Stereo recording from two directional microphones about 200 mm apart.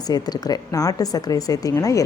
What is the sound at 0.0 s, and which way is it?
A woman's voice, 20° left (ahead or behind).